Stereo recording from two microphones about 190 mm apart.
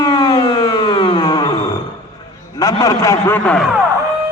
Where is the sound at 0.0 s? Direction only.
20° left (ahead or behind).